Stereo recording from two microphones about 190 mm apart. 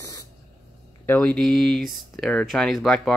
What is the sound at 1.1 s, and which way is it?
Speech, 5° left (ahead or behind).